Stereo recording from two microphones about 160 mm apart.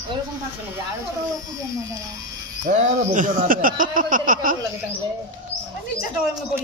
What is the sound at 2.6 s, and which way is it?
Speech, 45° right (ahead or behind).